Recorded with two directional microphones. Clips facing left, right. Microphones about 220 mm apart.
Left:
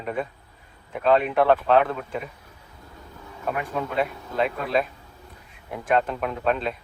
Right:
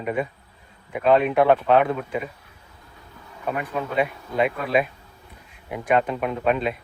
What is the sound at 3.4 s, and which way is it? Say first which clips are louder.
Speech: right 1 dB; 5° right (ahead or behind).